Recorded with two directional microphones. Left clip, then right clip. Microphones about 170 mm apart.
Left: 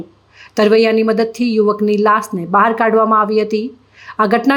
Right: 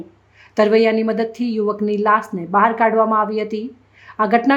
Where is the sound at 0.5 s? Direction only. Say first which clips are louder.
Left 3 dB; 15° left (ahead or behind).